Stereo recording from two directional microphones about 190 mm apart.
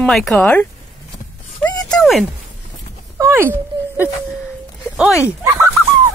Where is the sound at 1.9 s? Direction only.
Centre (ahead or behind).